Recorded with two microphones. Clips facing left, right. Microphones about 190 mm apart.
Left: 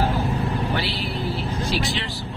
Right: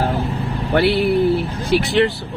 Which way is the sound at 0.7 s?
60° right (ahead or behind).